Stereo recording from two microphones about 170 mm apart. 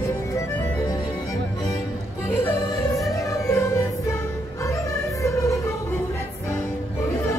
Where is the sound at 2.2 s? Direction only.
15° left (ahead or behind).